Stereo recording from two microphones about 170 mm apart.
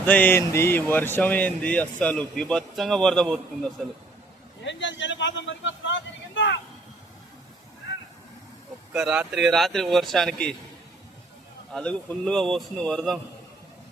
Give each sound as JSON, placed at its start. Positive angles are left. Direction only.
{"t": 0.0, "sound": "speech", "side_deg": 10}
{"t": 4.6, "sound": "a man's voice", "side_deg": 90}
{"t": 8.9, "sound": "speech", "side_deg": -5}
{"t": 11.7, "sound": "speech", "side_deg": 5}